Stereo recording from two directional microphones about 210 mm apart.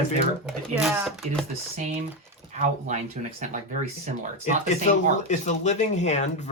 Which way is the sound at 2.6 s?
35° right (ahead or behind).